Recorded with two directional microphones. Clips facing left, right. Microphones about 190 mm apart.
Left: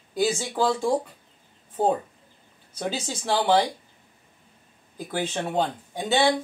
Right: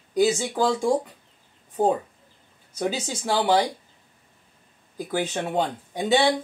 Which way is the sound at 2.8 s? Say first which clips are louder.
Right 2 dB; 10° right (ahead or behind).